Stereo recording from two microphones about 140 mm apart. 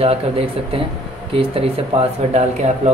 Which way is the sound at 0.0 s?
45° right (ahead or behind).